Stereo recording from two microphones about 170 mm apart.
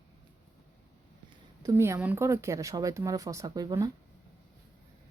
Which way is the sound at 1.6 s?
15° right (ahead or behind).